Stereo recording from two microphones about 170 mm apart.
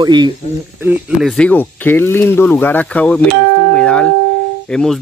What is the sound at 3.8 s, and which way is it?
Music, 5° left (ahead or behind).